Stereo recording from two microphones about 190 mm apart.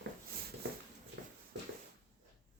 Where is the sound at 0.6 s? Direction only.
55° right (ahead or behind).